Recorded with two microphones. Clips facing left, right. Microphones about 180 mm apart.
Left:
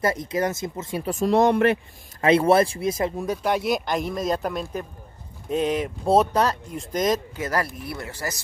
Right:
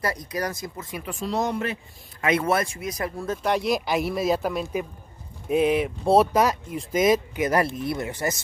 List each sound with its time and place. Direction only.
0.0 s speech: 25° left (ahead or behind)
1.0 s speech: 45° left (ahead or behind); by 1.8 s 60° left (ahead or behind)
2.2 s speech: 30° left (ahead or behind)
3.4 s speech: centre (ahead or behind); by 8.4 s 20° right (ahead or behind)